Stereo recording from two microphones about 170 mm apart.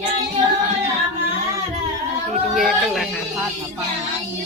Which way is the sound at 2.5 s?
Centre (ahead or behind).